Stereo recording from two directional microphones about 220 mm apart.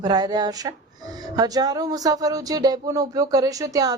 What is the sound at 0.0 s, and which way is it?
Speech, 20° right (ahead or behind).